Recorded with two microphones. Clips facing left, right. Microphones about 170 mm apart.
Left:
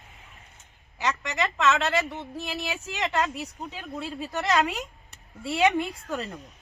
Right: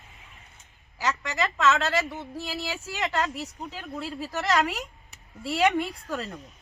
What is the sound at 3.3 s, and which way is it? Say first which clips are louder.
A woman's voice: even; 15° left (ahead or behind).